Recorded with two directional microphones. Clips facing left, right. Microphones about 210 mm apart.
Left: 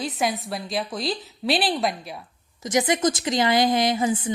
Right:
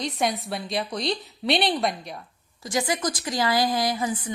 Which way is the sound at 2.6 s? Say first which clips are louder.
Left 5 dB; 20° left (ahead or behind).